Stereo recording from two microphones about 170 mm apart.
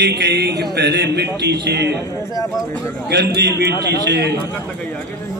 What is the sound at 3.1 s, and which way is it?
A man's voice, 85° right.